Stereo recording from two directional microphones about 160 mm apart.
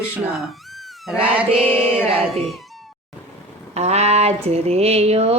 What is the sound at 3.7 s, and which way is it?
Speech, 45° right (ahead or behind).